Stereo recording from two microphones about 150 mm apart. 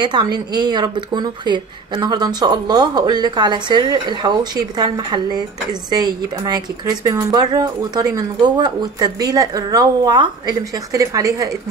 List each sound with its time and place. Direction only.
0.0 s a woman's voice: 30° right (ahead or behind)